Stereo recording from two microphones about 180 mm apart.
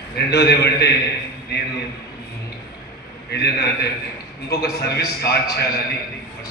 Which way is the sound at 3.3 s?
65° left (ahead or behind).